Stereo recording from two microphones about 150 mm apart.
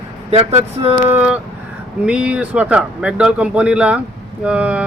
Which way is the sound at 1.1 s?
10° right (ahead or behind).